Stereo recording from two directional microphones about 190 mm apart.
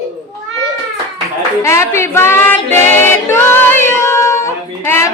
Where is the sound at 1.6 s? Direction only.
15° left (ahead or behind).